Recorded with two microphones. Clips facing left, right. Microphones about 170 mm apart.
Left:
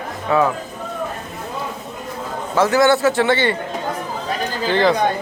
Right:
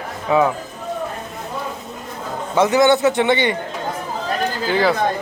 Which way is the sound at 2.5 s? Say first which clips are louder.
Right 1 dB; 20° right (ahead or behind).